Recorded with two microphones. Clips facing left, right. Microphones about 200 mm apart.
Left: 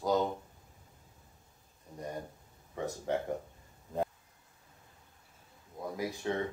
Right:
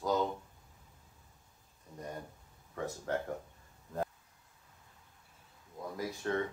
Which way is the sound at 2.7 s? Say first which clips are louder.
Left 2 dB; 20° left (ahead or behind).